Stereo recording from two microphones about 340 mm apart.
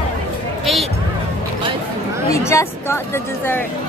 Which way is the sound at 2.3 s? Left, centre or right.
Centre.